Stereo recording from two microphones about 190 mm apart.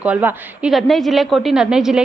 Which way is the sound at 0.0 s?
10° right (ahead or behind).